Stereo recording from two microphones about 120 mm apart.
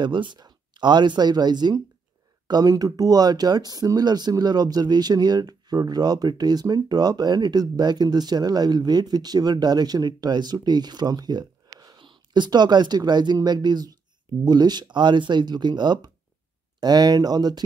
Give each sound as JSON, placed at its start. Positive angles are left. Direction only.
{"t": 0.0, "sound": "speech", "side_deg": -40}